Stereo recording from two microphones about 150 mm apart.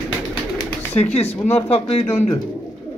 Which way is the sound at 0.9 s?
45° left (ahead or behind).